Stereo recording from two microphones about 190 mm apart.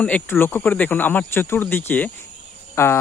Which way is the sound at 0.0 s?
10° left (ahead or behind).